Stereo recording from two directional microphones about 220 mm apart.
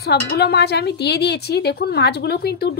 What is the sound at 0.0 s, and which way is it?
Speech, 50° left (ahead or behind).